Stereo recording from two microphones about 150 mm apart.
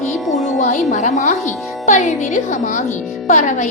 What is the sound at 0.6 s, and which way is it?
A woman's voice, 55° left (ahead or behind).